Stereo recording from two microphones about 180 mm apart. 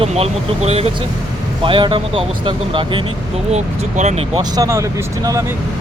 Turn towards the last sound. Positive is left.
turn(degrees=-15)  # may be behind; listen again after turning